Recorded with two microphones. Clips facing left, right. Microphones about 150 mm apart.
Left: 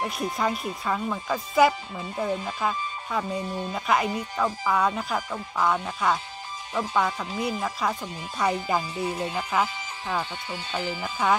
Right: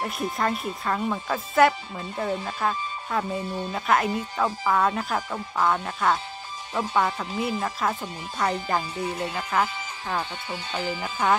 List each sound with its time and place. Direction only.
0.0 s speech: centre (ahead or behind)